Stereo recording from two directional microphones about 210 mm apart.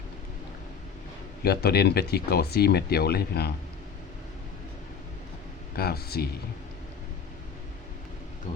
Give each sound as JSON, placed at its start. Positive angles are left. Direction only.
{"t": 1.4, "sound": "speech", "side_deg": 50}
{"t": 5.7, "sound": "speech", "side_deg": 45}